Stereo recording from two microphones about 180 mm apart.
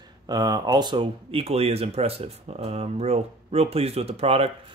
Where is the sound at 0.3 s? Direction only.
25° right (ahead or behind).